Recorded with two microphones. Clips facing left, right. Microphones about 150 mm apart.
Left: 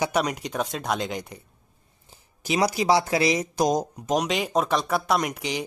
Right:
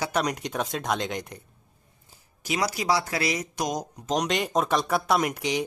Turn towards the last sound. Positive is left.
turn(degrees=0)  # may be behind; listen again after turning